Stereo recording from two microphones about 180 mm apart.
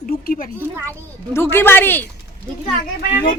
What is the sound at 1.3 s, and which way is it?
Speech, 15° left (ahead or behind).